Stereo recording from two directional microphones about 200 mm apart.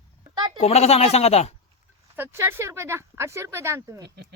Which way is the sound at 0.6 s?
30° left (ahead or behind).